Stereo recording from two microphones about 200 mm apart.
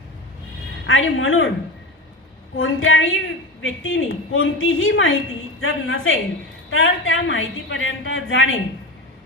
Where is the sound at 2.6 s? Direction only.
75° left (ahead or behind).